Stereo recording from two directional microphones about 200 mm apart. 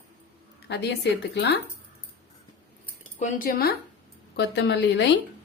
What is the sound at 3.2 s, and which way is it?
Speech, 45° left (ahead or behind).